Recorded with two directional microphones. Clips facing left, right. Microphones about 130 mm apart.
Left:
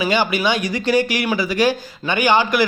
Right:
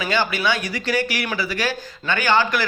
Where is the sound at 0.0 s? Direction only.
15° left (ahead or behind).